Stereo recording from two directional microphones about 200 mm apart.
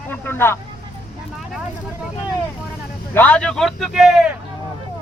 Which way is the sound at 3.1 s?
5° left (ahead or behind).